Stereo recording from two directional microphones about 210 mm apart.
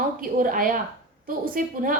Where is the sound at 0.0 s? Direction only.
40° right (ahead or behind).